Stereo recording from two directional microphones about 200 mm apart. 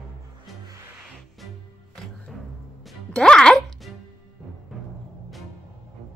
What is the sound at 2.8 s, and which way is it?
Music, 5° left (ahead or behind).